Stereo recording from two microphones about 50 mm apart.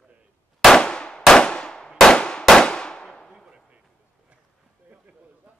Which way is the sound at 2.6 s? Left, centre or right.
Centre.